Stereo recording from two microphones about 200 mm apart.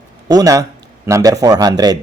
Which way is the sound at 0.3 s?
20° right (ahead or behind).